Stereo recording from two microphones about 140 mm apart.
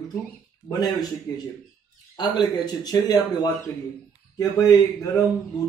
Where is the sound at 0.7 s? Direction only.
25° left (ahead or behind).